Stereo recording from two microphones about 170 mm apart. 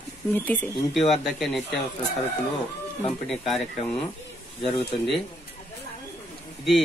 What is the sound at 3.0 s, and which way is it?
Speech, centre (ahead or behind).